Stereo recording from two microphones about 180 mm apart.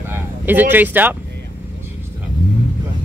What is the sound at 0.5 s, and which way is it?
Speech, 10° right (ahead or behind).